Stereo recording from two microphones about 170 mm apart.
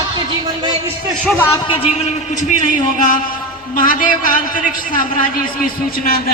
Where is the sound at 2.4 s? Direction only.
50° left (ahead or behind).